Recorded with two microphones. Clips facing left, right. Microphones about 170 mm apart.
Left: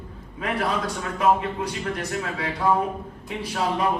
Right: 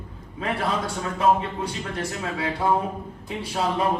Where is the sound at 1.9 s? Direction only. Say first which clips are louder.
Even; 30° right (ahead or behind).